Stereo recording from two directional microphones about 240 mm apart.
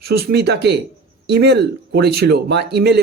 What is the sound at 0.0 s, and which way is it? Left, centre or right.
Speech, right.